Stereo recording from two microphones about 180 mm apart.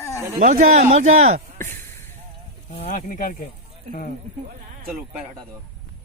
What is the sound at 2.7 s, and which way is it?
Speech, 40° left (ahead or behind).